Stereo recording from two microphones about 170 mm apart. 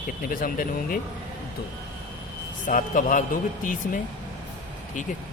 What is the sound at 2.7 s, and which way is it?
A man's voice, 50° left (ahead or behind).